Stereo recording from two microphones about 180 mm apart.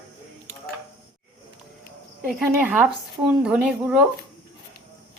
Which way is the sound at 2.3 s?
5° right (ahead or behind).